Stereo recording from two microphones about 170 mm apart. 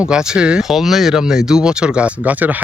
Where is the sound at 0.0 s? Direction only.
5° right (ahead or behind).